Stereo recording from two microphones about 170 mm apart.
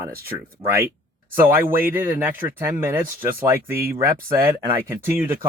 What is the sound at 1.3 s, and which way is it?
Speech, 10° right (ahead or behind).